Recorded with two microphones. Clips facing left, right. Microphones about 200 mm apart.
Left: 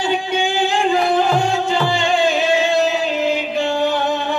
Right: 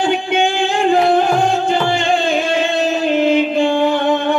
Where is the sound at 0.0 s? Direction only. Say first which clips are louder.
Right 4 dB; 55° right (ahead or behind).